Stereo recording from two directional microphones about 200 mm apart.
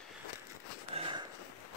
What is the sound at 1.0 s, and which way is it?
Sniff, 25° right (ahead or behind).